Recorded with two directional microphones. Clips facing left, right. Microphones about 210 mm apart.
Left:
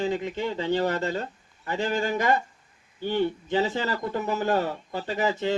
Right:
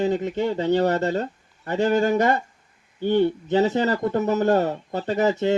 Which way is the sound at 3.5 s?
45° right (ahead or behind).